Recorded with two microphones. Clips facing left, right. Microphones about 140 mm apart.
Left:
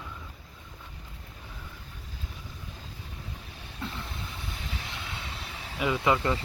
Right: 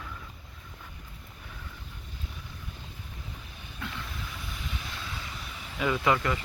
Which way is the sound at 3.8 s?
30° left (ahead or behind).